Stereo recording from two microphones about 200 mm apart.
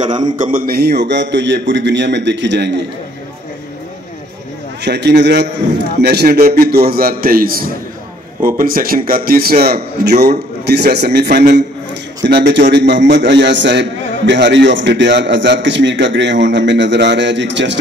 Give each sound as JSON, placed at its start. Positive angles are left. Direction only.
{"t": 0.4, "sound": "a man's voice", "side_deg": -45}
{"t": 4.8, "sound": "a man's voice", "side_deg": -60}